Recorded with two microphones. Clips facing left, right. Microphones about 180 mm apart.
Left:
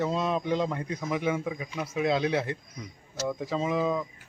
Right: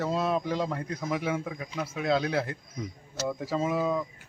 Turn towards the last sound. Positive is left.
turn(degrees=0)  # may be behind; listen again after turning